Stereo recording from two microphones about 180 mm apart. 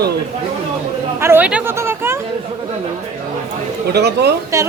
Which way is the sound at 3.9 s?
65° right (ahead or behind).